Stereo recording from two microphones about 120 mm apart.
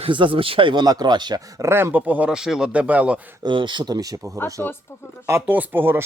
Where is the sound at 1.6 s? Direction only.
20° right (ahead or behind).